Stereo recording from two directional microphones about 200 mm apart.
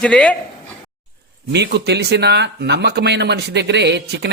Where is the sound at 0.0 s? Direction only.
5° left (ahead or behind).